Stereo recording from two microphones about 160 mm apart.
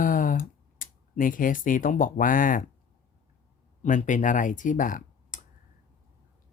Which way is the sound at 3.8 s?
50° left (ahead or behind).